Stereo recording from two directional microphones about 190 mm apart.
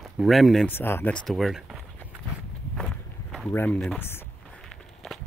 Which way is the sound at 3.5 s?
10° left (ahead or behind).